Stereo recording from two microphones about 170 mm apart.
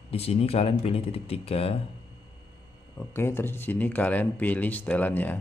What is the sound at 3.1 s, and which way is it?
Speech, 15° left (ahead or behind).